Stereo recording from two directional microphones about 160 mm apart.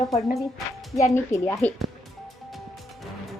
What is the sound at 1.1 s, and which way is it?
Speech, 15° left (ahead or behind).